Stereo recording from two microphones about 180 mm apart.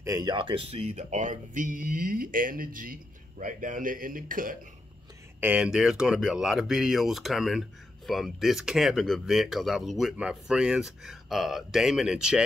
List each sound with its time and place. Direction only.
0.0 s speech: 20° right (ahead or behind); by 4.6 s 50° right (ahead or behind)
5.4 s speech: 5° right (ahead or behind)